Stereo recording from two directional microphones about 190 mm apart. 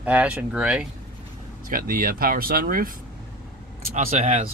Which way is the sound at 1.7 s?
45° right (ahead or behind).